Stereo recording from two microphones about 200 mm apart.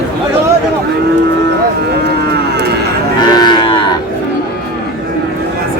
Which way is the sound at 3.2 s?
20° left (ahead or behind).